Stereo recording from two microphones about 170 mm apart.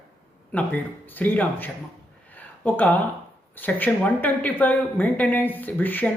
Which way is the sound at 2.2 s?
10° left (ahead or behind).